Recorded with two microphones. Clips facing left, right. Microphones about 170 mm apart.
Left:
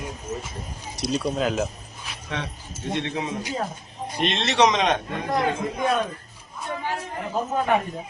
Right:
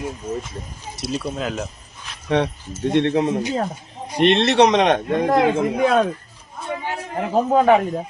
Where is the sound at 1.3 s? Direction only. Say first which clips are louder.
Left 2 dB; centre (ahead or behind).